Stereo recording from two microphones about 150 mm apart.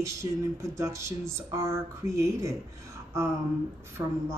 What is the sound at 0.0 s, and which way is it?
Speech, 20° right (ahead or behind).